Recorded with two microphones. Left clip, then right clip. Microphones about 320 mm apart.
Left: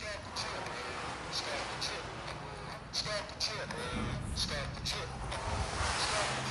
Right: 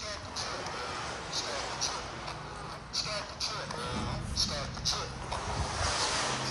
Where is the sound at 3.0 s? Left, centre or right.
Centre.